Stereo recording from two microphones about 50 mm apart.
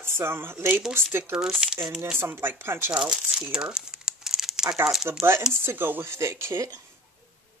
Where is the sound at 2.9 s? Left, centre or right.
Centre.